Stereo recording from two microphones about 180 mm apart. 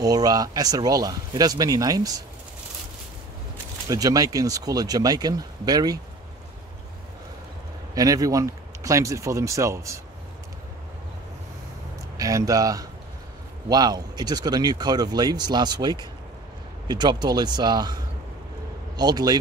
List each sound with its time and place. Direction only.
0.0 s speech: 20° right (ahead or behind)
3.9 s speech: 20° right (ahead or behind)
7.9 s speech: 20° right (ahead or behind)
12.2 s speech: 20° right (ahead or behind)